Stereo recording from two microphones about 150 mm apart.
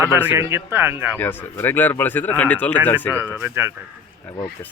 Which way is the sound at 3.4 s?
15° right (ahead or behind).